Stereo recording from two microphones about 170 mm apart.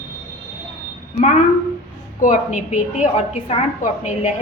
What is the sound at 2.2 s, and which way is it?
A woman's voice, 50° left (ahead or behind).